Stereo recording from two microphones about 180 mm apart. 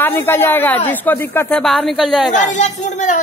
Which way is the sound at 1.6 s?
Centre (ahead or behind).